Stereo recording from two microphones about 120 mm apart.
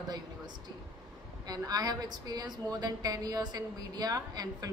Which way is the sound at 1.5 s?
35° right (ahead or behind).